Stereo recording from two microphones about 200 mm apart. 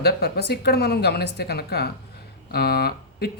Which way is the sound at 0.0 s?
55° left (ahead or behind).